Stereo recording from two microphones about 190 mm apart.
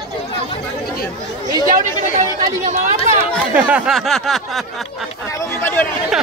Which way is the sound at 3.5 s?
5° right (ahead or behind).